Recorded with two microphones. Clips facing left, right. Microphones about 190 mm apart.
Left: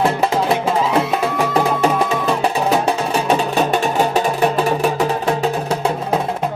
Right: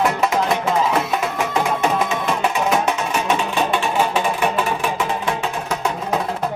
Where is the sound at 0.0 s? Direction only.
30° left (ahead or behind).